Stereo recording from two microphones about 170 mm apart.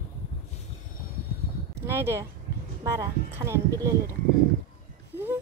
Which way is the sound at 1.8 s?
15° right (ahead or behind).